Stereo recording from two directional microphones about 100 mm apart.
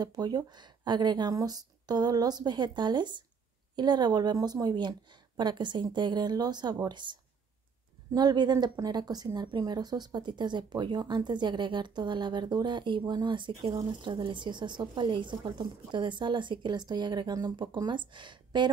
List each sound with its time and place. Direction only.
0.0 s a woman's voice: 45° right (ahead or behind)